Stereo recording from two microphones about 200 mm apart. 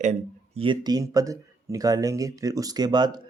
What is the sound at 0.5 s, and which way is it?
Speech, 25° right (ahead or behind).